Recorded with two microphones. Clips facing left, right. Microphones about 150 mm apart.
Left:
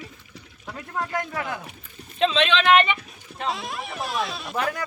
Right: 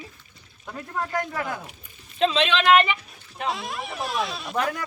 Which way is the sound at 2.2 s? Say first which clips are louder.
Even; 5° right (ahead or behind).